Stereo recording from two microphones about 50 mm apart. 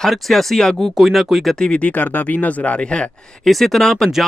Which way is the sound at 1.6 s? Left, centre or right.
Centre.